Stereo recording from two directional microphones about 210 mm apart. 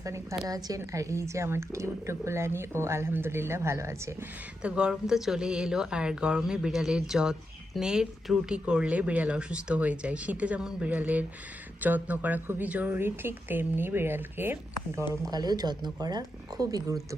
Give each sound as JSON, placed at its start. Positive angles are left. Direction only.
{"t": 0.0, "sound": "a woman's voice", "side_deg": -15}